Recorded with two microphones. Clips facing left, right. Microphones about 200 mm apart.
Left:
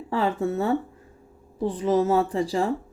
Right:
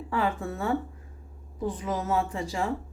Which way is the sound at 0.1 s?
30° left (ahead or behind).